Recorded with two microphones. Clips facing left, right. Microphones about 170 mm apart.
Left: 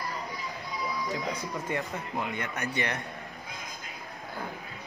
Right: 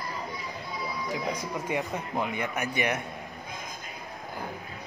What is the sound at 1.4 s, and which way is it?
Speech, 15° right (ahead or behind).